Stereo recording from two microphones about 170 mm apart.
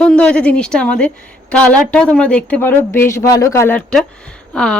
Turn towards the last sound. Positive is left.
turn(degrees=5)  # may be behind; listen again after turning